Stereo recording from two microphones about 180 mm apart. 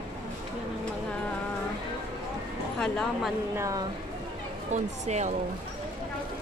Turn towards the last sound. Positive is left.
turn(degrees=-40)  # may be behind; listen again after turning